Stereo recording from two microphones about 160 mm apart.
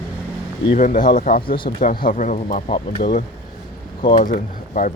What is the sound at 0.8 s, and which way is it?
Speech, 55° left (ahead or behind).